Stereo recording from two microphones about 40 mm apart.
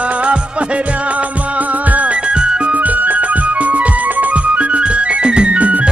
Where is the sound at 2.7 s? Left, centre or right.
Right.